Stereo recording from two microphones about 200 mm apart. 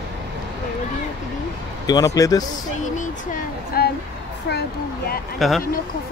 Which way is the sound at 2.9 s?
45° left (ahead or behind).